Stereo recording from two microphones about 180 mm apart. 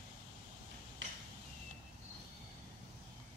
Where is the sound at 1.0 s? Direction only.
90° right.